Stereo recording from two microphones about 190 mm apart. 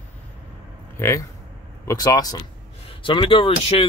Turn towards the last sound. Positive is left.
turn(degrees=25)  # may be behind; listen again after turning